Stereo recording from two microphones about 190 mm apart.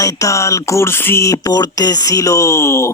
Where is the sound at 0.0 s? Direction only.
15° left (ahead or behind).